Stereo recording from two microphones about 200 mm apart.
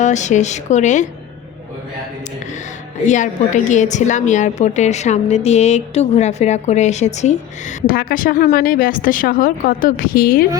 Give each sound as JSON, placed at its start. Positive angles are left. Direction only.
{"t": 0.0, "sound": "a woman's voice", "side_deg": 35}
{"t": 3.1, "sound": "a woman's voice", "side_deg": 35}